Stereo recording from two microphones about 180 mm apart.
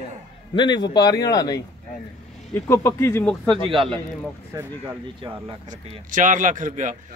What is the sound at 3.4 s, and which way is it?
Speech, 30° right (ahead or behind).